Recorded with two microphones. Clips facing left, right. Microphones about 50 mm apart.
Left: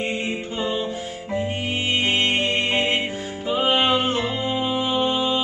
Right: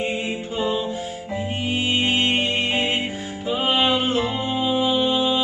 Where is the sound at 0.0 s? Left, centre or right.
Centre.